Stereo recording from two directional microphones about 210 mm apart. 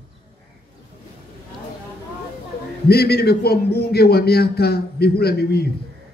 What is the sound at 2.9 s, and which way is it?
A man's voice, 50° left (ahead or behind).